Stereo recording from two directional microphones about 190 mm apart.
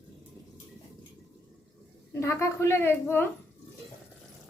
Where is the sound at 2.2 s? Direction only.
15° left (ahead or behind).